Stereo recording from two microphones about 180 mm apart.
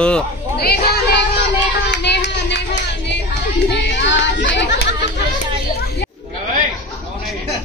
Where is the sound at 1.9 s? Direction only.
70° left (ahead or behind).